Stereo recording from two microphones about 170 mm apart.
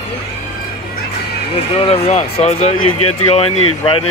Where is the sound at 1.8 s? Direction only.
35° left (ahead or behind).